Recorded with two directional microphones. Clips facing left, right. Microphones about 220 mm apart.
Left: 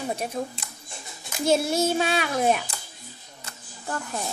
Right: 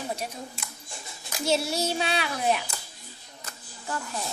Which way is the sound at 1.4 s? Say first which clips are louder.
Left 5 dB; 50° left (ahead or behind).